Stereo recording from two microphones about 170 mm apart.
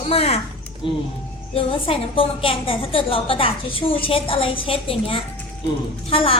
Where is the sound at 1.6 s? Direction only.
30° left (ahead or behind).